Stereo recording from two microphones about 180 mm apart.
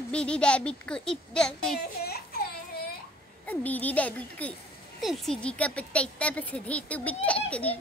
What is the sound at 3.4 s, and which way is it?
Speech, 10° left (ahead or behind).